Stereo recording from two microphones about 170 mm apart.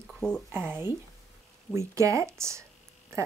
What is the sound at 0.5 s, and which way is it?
A woman's voice, 10° right (ahead or behind).